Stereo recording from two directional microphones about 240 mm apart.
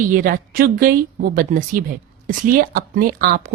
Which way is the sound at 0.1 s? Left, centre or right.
Right.